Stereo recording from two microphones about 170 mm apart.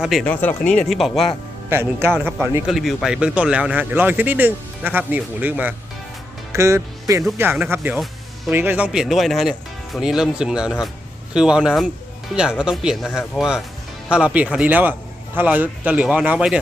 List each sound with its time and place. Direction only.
0.0 s speech: centre (ahead or behind)
1.7 s speech: 15° right (ahead or behind)
2.6 s speech: centre (ahead or behind)